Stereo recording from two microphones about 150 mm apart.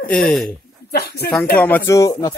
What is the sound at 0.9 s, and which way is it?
Speech, 90° left.